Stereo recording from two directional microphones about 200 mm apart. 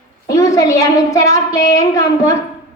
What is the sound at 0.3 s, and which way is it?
A woman's voice, 15° left (ahead or behind).